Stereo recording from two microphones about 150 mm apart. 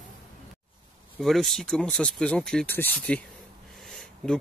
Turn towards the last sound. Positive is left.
turn(degrees=5)  # may be behind; listen again after turning